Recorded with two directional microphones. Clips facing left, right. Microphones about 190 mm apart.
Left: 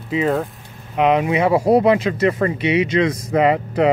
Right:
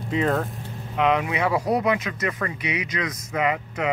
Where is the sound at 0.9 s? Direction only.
20° left (ahead or behind).